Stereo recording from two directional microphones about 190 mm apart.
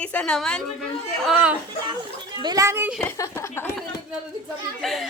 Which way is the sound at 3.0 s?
15° left (ahead or behind).